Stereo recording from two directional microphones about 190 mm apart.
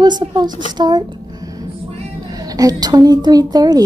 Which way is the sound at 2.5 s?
20° right (ahead or behind).